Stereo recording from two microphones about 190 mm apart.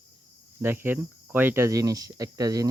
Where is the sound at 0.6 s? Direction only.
10° right (ahead or behind).